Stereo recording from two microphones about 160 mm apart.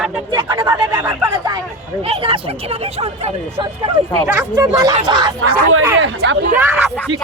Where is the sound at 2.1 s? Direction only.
35° right (ahead or behind).